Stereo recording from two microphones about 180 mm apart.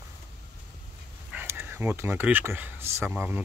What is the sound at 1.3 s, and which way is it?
Speech, 15° right (ahead or behind).